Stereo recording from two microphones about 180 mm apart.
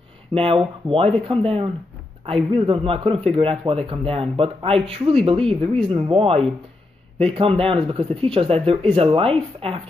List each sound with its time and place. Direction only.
0.3 s a man's voice: 30° right (ahead or behind)